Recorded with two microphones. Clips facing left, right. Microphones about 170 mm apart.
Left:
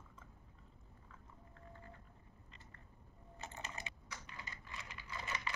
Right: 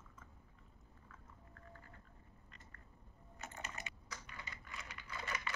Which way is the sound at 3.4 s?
30° left (ahead or behind).